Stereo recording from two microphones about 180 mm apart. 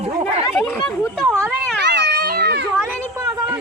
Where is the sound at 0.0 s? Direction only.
35° right (ahead or behind).